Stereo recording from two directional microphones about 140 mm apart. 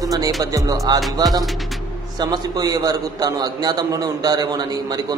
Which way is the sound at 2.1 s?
30° right (ahead or behind).